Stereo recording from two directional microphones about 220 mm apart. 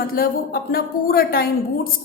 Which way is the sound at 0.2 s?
45° left (ahead or behind).